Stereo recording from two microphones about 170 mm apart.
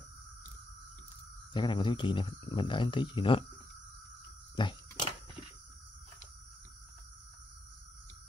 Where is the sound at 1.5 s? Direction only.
30° left (ahead or behind).